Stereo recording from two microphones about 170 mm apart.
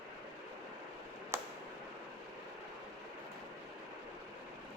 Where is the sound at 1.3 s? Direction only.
15° right (ahead or behind).